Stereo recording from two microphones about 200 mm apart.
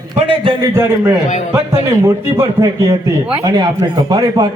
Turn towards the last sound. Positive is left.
turn(degrees=-20)  # may be behind; listen again after turning